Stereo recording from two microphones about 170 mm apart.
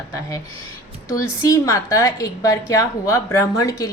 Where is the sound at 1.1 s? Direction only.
20° left (ahead or behind).